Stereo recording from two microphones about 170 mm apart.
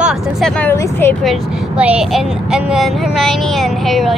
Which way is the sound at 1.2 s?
5° right (ahead or behind).